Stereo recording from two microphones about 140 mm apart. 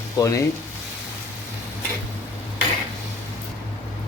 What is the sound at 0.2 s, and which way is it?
Speech, 25° left (ahead or behind).